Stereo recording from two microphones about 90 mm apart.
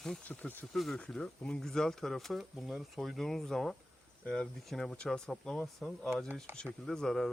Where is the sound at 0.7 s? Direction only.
5° left (ahead or behind).